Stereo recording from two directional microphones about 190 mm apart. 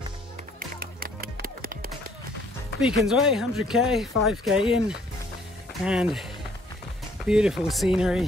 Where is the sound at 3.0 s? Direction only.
Centre (ahead or behind).